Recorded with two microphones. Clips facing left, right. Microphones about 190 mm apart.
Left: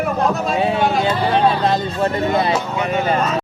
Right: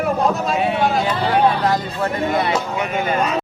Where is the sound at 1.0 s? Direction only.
25° left (ahead or behind).